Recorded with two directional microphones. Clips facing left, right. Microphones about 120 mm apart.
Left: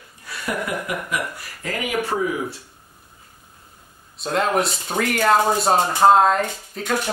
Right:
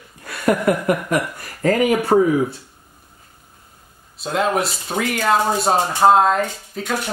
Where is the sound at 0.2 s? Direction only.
55° right (ahead or behind).